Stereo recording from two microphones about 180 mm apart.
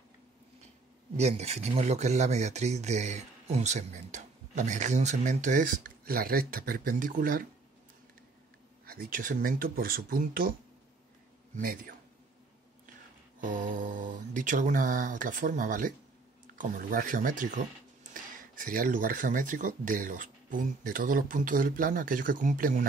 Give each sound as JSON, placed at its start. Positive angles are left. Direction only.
{"t": 1.1, "sound": "speech", "side_deg": -35}
{"t": 8.8, "sound": "speech", "side_deg": -55}
{"t": 11.5, "sound": "speech", "side_deg": -50}
{"t": 13.4, "sound": "speech", "side_deg": -45}